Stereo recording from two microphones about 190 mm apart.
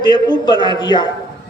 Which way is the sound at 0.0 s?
25° left (ahead or behind).